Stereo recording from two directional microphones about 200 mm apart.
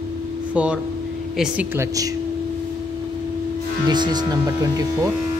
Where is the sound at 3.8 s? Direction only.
20° right (ahead or behind).